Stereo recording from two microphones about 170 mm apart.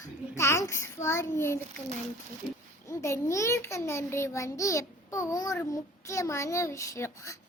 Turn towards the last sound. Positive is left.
turn(degrees=20)  # may be behind; listen again after turning